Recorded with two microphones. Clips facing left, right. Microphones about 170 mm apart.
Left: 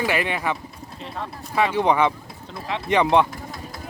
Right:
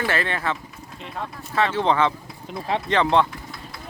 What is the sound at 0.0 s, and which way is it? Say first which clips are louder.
Speech: left 1 dB; 15° left (ahead or behind).